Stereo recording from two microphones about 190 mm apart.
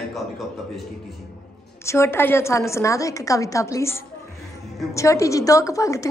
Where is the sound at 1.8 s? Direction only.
15° left (ahead or behind).